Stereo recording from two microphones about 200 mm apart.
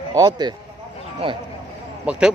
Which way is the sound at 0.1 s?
20° right (ahead or behind).